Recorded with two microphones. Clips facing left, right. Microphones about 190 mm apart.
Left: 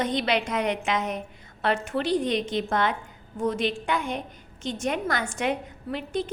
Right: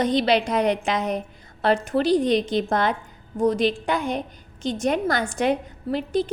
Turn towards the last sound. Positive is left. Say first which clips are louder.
# right 6 dB
turn(degrees=-35)  # may be behind; listen again after turning